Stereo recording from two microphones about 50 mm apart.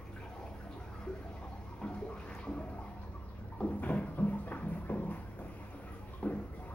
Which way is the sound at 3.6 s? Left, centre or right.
Left.